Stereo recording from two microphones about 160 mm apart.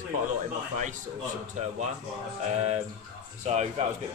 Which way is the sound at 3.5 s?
45° right (ahead or behind).